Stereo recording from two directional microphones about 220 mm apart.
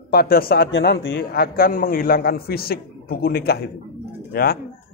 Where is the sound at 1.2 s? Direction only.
45° left (ahead or behind).